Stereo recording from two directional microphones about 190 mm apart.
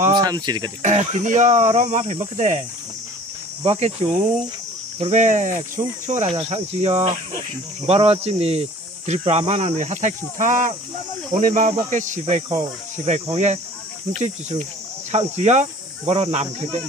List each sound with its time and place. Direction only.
0.1 s speech: 20° right (ahead or behind)
0.8 s speech: 40° right (ahead or behind)
3.6 s speech: 30° right (ahead or behind)
4.9 s speech: 35° right (ahead or behind)